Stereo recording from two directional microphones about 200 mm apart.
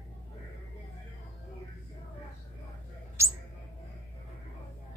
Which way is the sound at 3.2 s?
15° right (ahead or behind).